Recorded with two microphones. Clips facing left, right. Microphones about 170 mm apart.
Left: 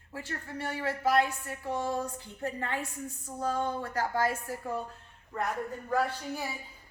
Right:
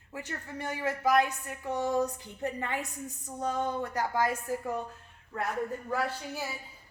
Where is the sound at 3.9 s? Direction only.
15° right (ahead or behind).